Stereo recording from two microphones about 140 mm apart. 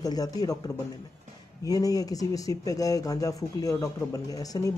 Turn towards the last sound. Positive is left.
turn(degrees=25)  # may be behind; listen again after turning